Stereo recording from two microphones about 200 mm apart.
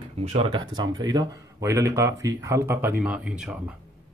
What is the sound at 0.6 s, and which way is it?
Speech, 20° right (ahead or behind).